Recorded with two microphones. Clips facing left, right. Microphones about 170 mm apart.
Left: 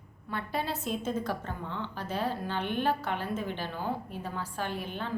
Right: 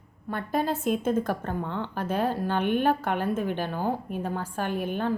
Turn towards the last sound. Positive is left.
turn(degrees=-50)  # may be behind; listen again after turning